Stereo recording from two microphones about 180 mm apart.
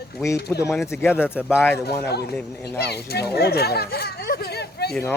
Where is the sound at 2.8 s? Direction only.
65° left (ahead or behind).